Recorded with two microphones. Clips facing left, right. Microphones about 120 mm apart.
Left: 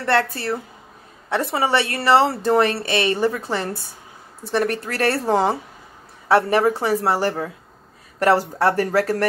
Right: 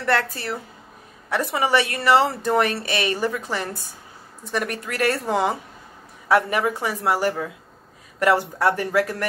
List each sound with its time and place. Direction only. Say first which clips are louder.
0.0 s a woman's voice: left 3 dB; 30° left (ahead or behind)
1.3 s a woman's voice: left 1 dB; 30° left (ahead or behind)